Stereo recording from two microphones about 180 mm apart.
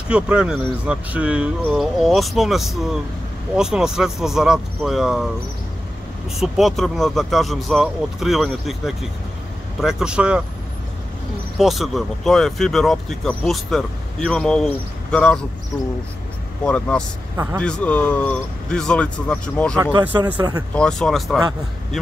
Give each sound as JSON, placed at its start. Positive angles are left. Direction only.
{"t": 0.1, "sound": "speech", "side_deg": -5}
{"t": 6.4, "sound": "speech", "side_deg": 0}
{"t": 11.5, "sound": "speech", "side_deg": 0}
{"t": 16.6, "sound": "speech", "side_deg": 5}
{"t": 19.8, "sound": "speech", "side_deg": -25}
{"t": 20.7, "sound": "speech", "side_deg": 5}